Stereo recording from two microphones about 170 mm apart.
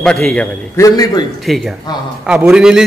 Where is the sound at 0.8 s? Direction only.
20° left (ahead or behind).